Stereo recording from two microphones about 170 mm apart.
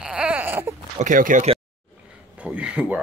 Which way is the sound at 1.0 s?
50° right (ahead or behind).